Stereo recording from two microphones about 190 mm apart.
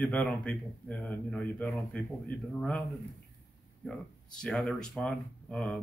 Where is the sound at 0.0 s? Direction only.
5° left (ahead or behind).